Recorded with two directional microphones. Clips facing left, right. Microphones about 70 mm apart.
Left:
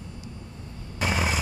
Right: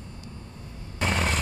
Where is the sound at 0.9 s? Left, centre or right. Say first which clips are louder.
Even; centre.